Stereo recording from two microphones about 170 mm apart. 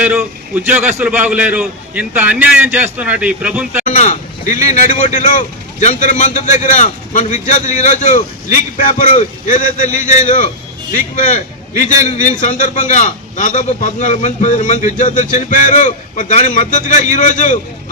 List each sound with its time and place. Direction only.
0.0 s a man's voice: 10° right (ahead or behind)
3.8 s speech: 45° left (ahead or behind)